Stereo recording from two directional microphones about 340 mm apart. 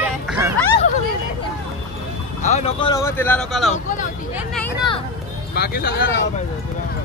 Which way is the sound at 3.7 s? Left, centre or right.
Left.